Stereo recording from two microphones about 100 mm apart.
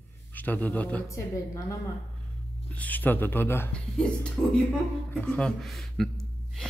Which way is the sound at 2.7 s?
15° left (ahead or behind).